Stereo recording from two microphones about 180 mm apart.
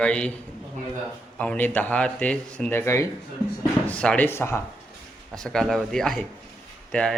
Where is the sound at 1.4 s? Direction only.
10° left (ahead or behind).